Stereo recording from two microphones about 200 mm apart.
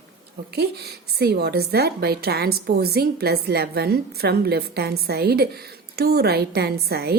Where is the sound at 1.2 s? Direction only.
55° right (ahead or behind).